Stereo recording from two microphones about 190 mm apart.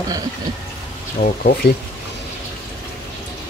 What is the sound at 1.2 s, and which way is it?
Speech, 50° left (ahead or behind).